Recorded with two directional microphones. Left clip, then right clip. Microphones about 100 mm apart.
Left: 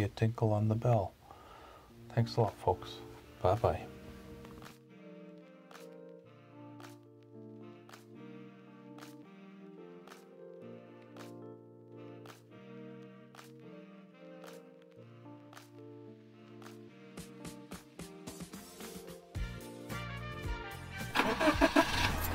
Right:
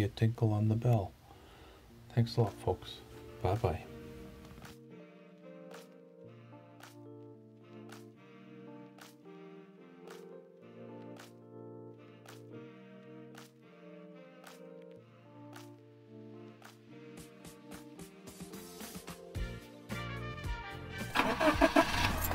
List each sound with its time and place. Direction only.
0.0 s speech: centre (ahead or behind)
2.1 s speech: centre (ahead or behind)
3.4 s speech: 15° left (ahead or behind)
17.4 s music: 10° left (ahead or behind)
20.1 s music: centre (ahead or behind)
21.1 s vehicle: centre (ahead or behind)